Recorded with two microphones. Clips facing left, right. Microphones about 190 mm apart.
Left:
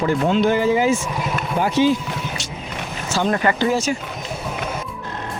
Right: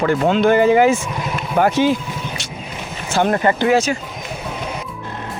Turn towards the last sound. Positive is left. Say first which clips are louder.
# right 4 dB
turn(degrees=-65)  # may be behind; listen again after turning